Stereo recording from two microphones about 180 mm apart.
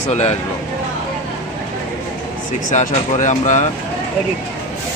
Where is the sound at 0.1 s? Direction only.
35° left (ahead or behind).